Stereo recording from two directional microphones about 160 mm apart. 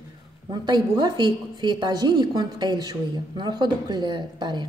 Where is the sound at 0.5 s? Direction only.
25° right (ahead or behind).